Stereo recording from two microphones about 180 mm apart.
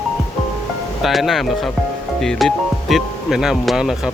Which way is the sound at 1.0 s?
Centre (ahead or behind).